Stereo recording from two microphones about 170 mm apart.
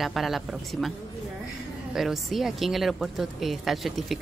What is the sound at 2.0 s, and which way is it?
A woman's voice, centre (ahead or behind).